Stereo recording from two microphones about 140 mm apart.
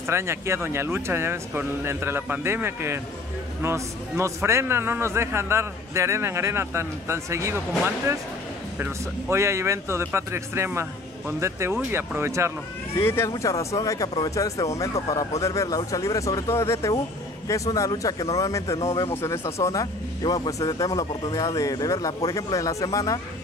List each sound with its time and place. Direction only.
0.0 s a man's voice: 20° right (ahead or behind)
12.9 s speech: 15° left (ahead or behind)